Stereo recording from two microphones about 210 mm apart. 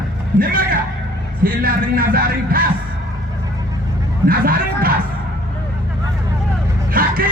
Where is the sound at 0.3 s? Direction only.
45° right (ahead or behind).